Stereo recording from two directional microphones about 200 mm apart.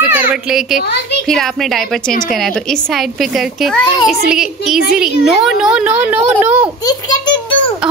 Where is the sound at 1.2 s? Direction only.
Centre (ahead or behind).